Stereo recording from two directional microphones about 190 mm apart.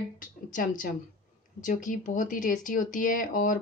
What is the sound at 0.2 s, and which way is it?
Speech, 45° left (ahead or behind).